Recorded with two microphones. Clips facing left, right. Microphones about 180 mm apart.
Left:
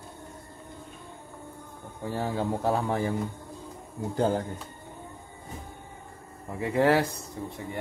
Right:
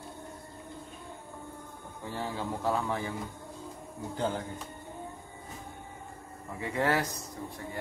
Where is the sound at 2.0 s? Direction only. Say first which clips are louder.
Left 6 dB; 40° left (ahead or behind).